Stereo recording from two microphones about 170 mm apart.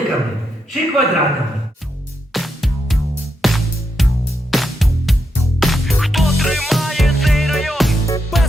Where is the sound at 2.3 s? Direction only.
Centre (ahead or behind).